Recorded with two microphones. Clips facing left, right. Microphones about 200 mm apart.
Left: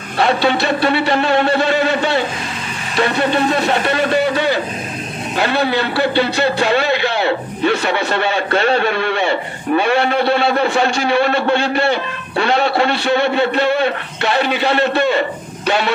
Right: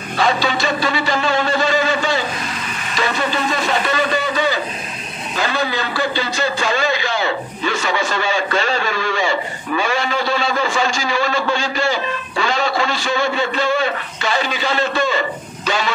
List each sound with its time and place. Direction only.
0.2 s a man's voice: 60° left (ahead or behind)